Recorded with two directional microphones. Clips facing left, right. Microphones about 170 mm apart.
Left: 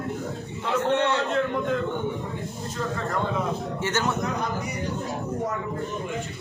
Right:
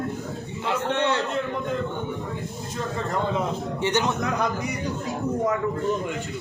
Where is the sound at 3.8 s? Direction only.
15° right (ahead or behind).